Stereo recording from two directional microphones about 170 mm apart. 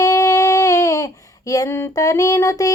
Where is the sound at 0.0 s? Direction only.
20° left (ahead or behind).